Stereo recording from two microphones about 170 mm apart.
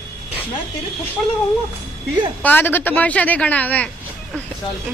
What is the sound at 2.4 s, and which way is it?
Speech, 10° left (ahead or behind).